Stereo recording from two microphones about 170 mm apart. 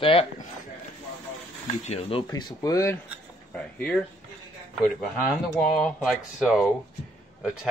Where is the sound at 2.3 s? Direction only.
25° left (ahead or behind).